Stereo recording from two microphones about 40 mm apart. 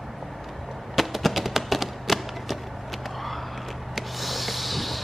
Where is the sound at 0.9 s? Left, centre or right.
Centre.